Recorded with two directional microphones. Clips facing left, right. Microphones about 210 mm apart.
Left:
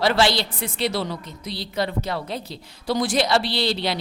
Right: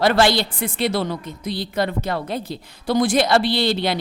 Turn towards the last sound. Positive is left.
turn(degrees=-55)  # may be behind; listen again after turning